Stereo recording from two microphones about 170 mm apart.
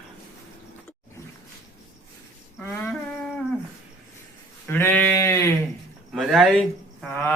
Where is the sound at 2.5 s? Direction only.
10° left (ahead or behind).